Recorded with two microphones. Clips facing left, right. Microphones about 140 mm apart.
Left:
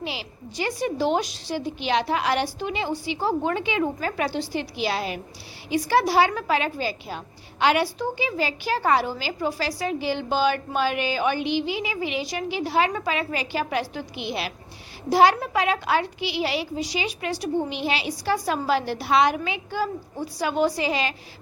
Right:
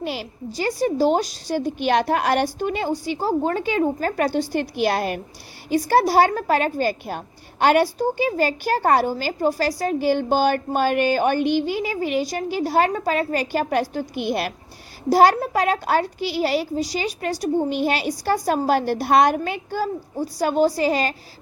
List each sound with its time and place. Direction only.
0.0 s a woman's voice: 45° right (ahead or behind)